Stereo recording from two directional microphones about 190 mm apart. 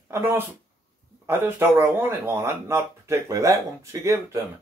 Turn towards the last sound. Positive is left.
turn(degrees=-15)  # may be behind; listen again after turning